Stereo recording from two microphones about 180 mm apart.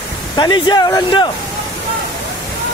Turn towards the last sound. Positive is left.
turn(degrees=25)  # may be behind; listen again after turning